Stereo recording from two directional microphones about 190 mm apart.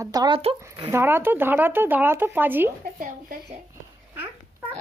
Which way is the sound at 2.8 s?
45° right (ahead or behind).